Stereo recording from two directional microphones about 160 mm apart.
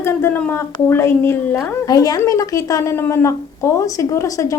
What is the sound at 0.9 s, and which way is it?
A woman's voice, 15° left (ahead or behind).